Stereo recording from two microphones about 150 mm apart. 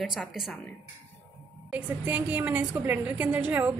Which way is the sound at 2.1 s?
10° right (ahead or behind).